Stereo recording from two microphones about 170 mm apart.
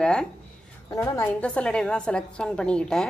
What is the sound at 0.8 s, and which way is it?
Speech, 15° left (ahead or behind).